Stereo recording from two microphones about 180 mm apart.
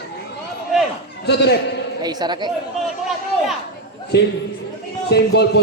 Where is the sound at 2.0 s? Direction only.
20° right (ahead or behind).